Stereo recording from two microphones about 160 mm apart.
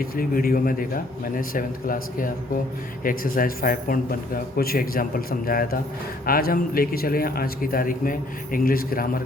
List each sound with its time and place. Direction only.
0.0 s a man's voice: 65° left (ahead or behind)